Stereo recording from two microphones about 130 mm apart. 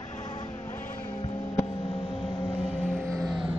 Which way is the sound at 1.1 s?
40° left (ahead or behind).